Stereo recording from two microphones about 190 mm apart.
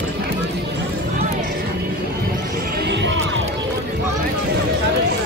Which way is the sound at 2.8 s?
65° right (ahead or behind).